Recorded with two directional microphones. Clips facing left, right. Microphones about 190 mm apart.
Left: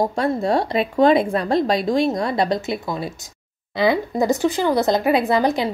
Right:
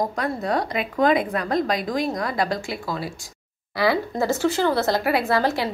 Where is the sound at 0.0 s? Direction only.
30° left (ahead or behind).